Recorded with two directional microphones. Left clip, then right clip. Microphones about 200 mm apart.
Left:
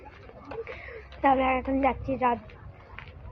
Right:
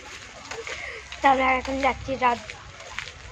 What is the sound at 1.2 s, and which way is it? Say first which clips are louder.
Speech: right 3 dB; centre (ahead or behind).